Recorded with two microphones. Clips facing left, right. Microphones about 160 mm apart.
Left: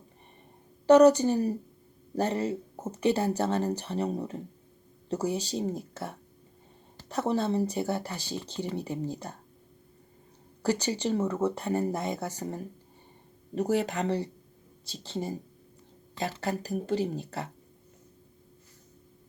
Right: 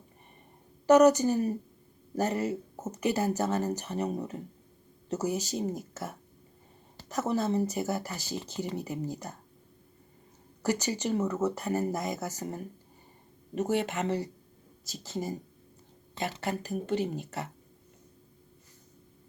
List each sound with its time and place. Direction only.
0.9 s speech: 30° left (ahead or behind)
10.6 s speech: 30° left (ahead or behind)
16.4 s speech: 35° left (ahead or behind)